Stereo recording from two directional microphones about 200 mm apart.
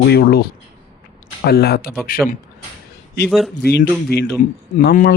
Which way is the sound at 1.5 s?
50° left (ahead or behind).